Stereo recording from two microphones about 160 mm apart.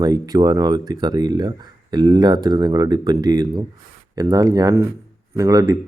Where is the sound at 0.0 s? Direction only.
25° right (ahead or behind).